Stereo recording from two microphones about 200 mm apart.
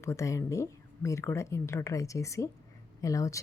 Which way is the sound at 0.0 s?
15° left (ahead or behind).